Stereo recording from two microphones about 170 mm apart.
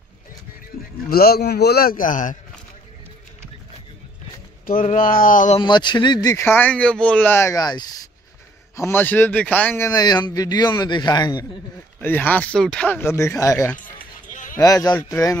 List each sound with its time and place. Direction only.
1.1 s a man's voice: 65° left (ahead or behind)
4.6 s speech: 50° left (ahead or behind)
5.6 s a man's voice: 25° left (ahead or behind)
12.0 s speech: 10° left (ahead or behind)
13.7 s music: 50° left (ahead or behind)
14.6 s a man's voice: 20° left (ahead or behind)